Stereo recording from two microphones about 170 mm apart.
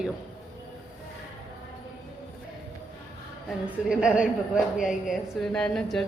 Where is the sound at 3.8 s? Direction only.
5° right (ahead or behind).